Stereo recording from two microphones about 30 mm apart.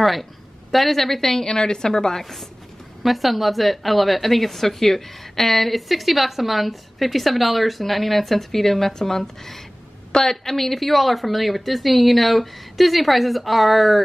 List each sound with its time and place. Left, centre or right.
0.0 s speech: centre
1.5 s a woman's voice: left
3.0 s a woman's voice: centre